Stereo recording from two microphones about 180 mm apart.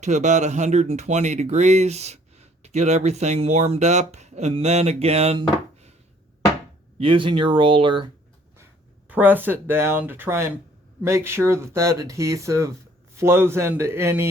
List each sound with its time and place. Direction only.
0.0 s speech: 40° right (ahead or behind)
7.0 s speech: 30° right (ahead or behind)
9.0 s speech: 10° right (ahead or behind)